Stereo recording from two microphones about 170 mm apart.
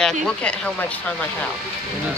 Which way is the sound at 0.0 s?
5° left (ahead or behind).